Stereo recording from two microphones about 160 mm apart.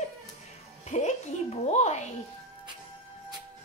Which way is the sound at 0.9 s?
45° left (ahead or behind).